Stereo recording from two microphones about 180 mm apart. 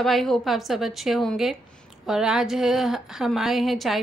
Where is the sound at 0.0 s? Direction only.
Centre (ahead or behind).